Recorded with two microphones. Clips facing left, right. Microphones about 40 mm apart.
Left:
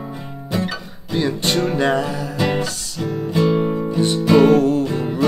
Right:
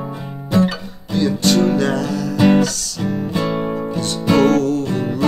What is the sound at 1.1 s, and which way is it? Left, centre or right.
Music, left.